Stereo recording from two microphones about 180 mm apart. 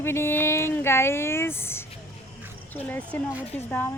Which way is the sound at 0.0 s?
15° left (ahead or behind).